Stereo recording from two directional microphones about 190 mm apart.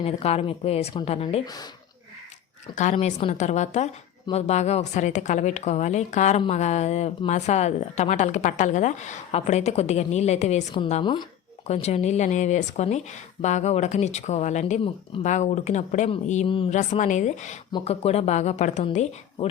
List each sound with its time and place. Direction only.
0.0 s a woman's voice: 30° left (ahead or behind)
2.7 s a woman's voice: 35° left (ahead or behind)
11.0 s speech: 25° left (ahead or behind)
11.7 s a woman's voice: 35° left (ahead or behind)